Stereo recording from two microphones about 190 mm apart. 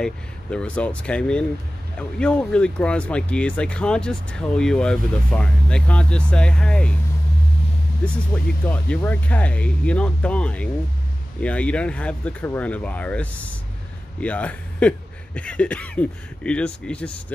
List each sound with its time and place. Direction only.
0.0 s speech: 5° left (ahead or behind)
8.3 s speech: 5° left (ahead or behind)